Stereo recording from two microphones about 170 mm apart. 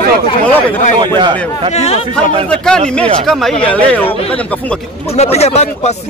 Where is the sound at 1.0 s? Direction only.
25° right (ahead or behind).